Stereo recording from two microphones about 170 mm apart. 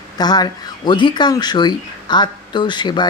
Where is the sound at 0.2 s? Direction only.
25° left (ahead or behind).